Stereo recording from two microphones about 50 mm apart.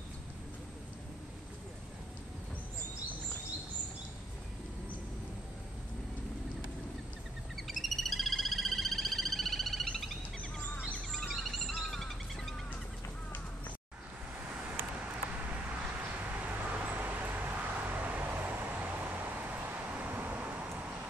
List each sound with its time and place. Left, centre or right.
7.5 s frog: centre
11.1 s a sound: centre
16.3 s vehicle: right